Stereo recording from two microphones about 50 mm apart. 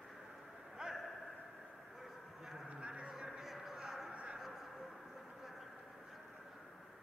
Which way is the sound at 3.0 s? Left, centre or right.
Centre.